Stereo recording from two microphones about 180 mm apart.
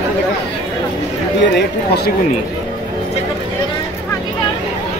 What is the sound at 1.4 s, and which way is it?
Speech, 70° left (ahead or behind).